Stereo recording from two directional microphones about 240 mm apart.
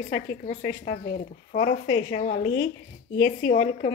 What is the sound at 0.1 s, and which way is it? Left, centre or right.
A woman's voice, left.